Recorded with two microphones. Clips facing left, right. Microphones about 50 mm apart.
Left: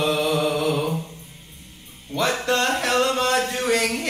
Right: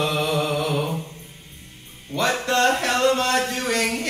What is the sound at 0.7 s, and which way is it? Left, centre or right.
Mantra, centre.